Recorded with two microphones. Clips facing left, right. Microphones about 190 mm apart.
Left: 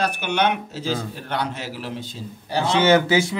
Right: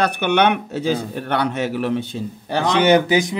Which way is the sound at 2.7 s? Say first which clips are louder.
Right 2 dB; 15° right (ahead or behind).